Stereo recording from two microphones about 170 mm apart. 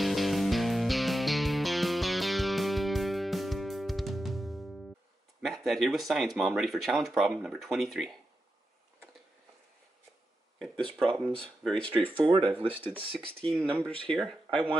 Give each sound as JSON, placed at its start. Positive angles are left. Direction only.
{"t": 0.0, "sound": "music", "side_deg": 0}
{"t": 5.4, "sound": "speech", "side_deg": 0}
{"t": 10.6, "sound": "a sound", "side_deg": 5}
{"t": 11.1, "sound": "speech", "side_deg": 5}
{"t": 12.0, "sound": "speech", "side_deg": -30}
{"t": 13.3, "sound": "speech", "side_deg": 5}